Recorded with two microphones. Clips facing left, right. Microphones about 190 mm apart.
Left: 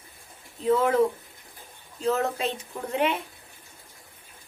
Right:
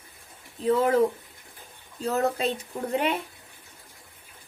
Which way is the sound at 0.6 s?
35° right (ahead or behind).